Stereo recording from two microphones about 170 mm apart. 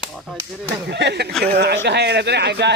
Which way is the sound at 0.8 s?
80° right.